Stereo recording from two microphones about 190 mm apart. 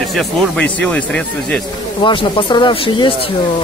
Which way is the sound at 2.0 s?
25° left (ahead or behind).